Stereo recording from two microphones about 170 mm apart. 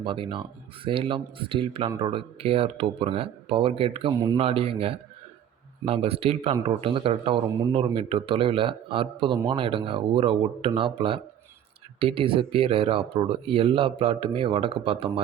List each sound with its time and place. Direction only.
0.0 s a man's voice: 30° right (ahead or behind)